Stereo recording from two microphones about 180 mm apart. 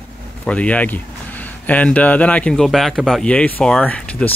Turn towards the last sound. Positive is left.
turn(degrees=5)  # may be behind; listen again after turning